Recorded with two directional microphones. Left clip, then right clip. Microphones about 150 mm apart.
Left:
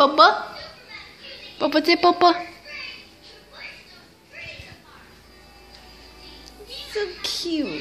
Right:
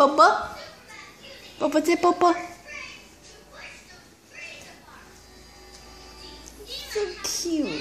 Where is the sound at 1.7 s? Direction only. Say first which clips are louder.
Left 4 dB; centre (ahead or behind).